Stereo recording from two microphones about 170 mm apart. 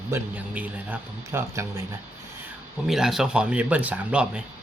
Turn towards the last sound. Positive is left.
turn(degrees=-5)  # may be behind; listen again after turning